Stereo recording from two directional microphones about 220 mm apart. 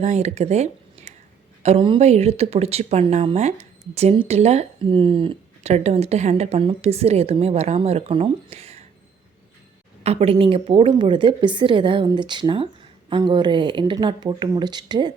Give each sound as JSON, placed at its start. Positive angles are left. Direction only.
{"t": 0.0, "sound": "speech", "side_deg": -30}
{"t": 10.0, "sound": "speech", "side_deg": -30}